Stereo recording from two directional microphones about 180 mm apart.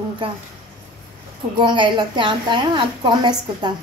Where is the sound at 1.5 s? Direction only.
25° right (ahead or behind).